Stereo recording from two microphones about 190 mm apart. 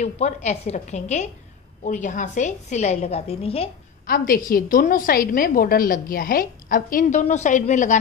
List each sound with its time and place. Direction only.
0.0 s a woman's voice: 35° left (ahead or behind)
4.0 s a woman's voice: 45° left (ahead or behind)